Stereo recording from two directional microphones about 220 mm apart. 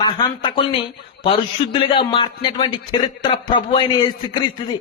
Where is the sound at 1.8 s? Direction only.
25° left (ahead or behind).